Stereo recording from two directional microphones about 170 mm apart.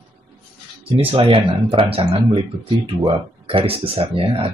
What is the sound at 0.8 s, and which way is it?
Speech, 35° right (ahead or behind).